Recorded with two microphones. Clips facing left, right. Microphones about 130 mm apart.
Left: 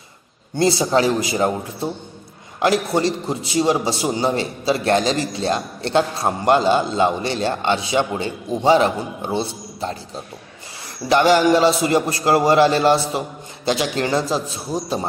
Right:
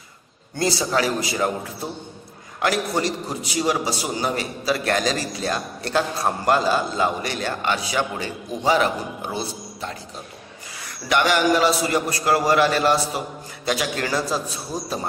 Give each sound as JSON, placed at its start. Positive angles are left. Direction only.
{"t": 0.6, "sound": "a man's voice", "side_deg": 25}
{"t": 11.1, "sound": "a man's voice", "side_deg": 30}